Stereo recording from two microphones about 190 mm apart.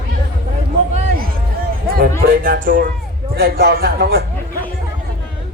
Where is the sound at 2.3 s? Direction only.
45° right (ahead or behind).